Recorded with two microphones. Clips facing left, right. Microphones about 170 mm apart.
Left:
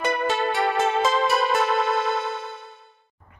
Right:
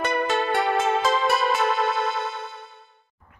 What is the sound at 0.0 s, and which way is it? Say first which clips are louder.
Music: even; centre (ahead or behind).